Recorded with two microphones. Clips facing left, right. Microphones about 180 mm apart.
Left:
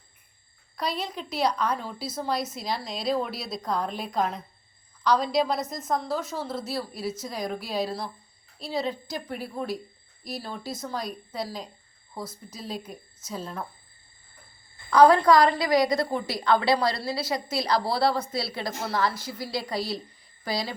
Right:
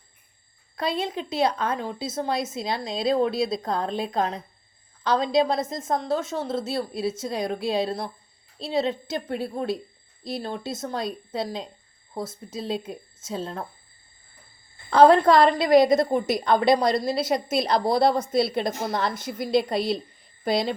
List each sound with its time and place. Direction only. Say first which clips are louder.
0.8 s a woman's voice: right 4 dB; 25° right (ahead or behind)
14.8 s a woman's voice: right 2 dB; 25° right (ahead or behind)